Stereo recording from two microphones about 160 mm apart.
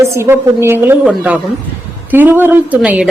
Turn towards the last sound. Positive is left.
turn(degrees=-10)  # may be behind; listen again after turning